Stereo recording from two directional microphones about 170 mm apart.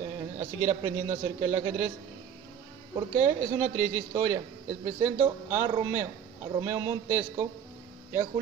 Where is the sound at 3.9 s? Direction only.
15° right (ahead or behind).